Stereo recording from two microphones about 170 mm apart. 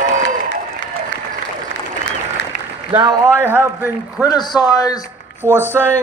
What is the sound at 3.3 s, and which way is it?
Speech, 10° right (ahead or behind).